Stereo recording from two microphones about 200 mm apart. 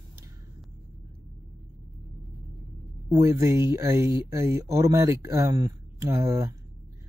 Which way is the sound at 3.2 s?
15° right (ahead or behind).